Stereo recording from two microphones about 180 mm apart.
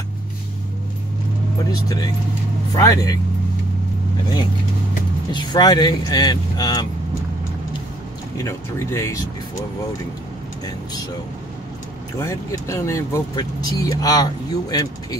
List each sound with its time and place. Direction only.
1.7 s speech: 20° left (ahead or behind)
5.3 s speech: 25° left (ahead or behind)
8.4 s speech: 15° left (ahead or behind)
12.2 s speech: 15° left (ahead or behind)